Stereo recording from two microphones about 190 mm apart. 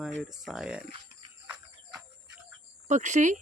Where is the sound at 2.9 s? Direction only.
40° right (ahead or behind).